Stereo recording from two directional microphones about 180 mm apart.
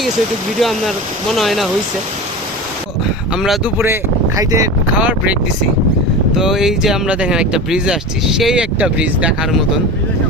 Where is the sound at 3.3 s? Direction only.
Centre (ahead or behind).